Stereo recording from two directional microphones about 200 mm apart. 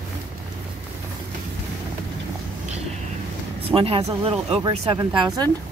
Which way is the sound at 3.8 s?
30° right (ahead or behind).